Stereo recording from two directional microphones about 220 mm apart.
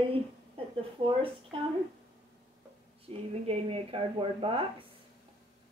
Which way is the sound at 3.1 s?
25° right (ahead or behind).